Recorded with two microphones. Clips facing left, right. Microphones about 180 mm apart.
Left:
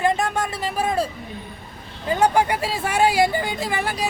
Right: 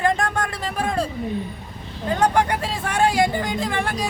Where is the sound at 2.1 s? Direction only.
10° left (ahead or behind).